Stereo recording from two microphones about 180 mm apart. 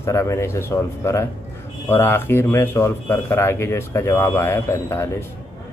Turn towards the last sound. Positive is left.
turn(degrees=15)  # may be behind; listen again after turning